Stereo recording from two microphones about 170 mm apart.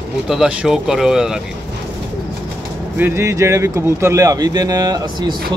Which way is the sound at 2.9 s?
15° right (ahead or behind).